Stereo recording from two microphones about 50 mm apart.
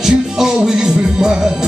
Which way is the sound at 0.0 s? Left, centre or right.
Centre.